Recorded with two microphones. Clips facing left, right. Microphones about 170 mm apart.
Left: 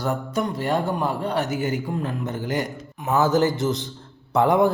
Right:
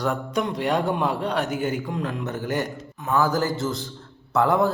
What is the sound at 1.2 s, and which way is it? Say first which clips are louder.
Speech: even; 5° left (ahead or behind).